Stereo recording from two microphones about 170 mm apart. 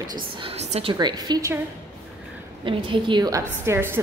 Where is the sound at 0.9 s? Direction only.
25° right (ahead or behind).